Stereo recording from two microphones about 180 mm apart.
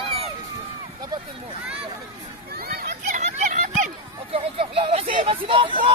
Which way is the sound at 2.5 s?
60° right (ahead or behind).